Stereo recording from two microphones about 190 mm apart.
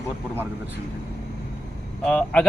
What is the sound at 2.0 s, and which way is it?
Speech, 5° left (ahead or behind).